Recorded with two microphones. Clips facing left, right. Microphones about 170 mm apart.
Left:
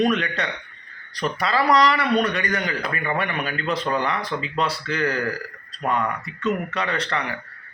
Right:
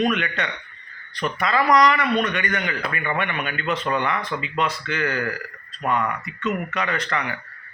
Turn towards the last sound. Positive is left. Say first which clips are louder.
# even
turn(degrees=30)  # may be behind; listen again after turning